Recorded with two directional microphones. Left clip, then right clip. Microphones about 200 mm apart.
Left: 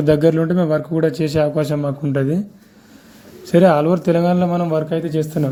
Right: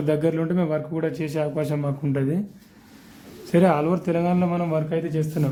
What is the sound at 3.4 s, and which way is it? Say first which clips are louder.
Speech: left 7 dB; 20° left (ahead or behind).